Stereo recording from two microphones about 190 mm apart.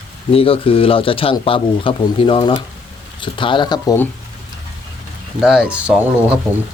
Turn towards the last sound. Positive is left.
turn(degrees=-5)  # may be behind; listen again after turning